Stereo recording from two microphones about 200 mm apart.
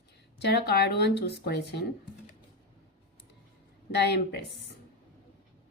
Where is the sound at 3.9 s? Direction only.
55° left (ahead or behind).